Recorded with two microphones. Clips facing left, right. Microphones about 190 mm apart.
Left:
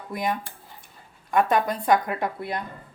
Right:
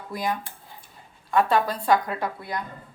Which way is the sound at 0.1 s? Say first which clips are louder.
Left 1 dB; 20° left (ahead or behind).